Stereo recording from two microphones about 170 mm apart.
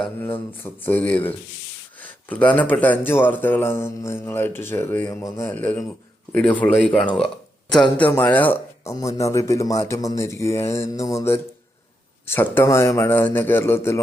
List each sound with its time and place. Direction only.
0.0 s speech: 10° left (ahead or behind)